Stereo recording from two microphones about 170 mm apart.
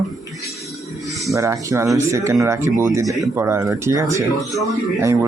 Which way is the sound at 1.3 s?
20° right (ahead or behind).